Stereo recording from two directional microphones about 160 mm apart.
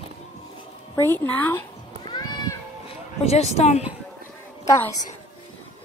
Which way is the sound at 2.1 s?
25° left (ahead or behind).